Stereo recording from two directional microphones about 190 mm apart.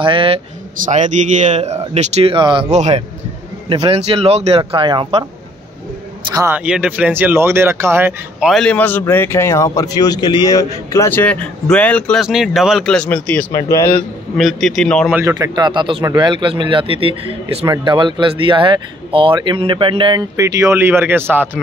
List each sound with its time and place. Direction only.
0.0 s speech: 30° right (ahead or behind)
0.8 s speech: 40° right (ahead or behind)
6.3 s speech: 10° right (ahead or behind); by 14.0 s 15° left (ahead or behind)
14.3 s speech: centre (ahead or behind)
15.1 s speech: 15° right (ahead or behind)